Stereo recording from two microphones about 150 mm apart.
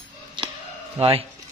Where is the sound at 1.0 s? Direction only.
40° right (ahead or behind).